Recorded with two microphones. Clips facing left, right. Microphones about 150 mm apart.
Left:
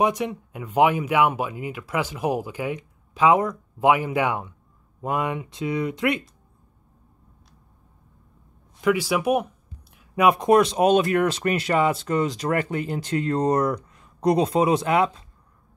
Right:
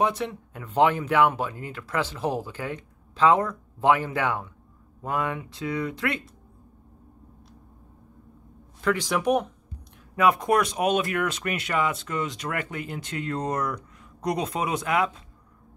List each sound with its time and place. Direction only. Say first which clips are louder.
0.0 s speech: left 3 dB; 15° left (ahead or behind)
8.8 s speech: left 3 dB; 10° left (ahead or behind); by 15.0 s 30° left (ahead or behind)